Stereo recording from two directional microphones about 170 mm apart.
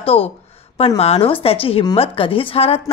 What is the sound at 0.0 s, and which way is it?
Speech, 35° left (ahead or behind).